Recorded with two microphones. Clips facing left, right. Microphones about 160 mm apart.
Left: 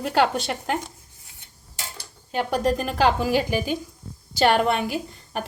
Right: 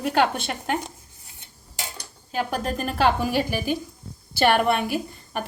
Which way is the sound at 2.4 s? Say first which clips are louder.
Left 3 dB; centre (ahead or behind).